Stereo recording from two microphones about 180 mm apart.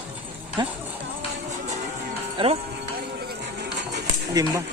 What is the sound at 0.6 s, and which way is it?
Speech, 25° right (ahead or behind).